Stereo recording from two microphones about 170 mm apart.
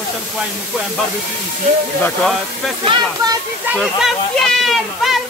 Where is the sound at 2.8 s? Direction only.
25° right (ahead or behind).